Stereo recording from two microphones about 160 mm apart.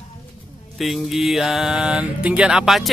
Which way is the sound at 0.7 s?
Centre (ahead or behind).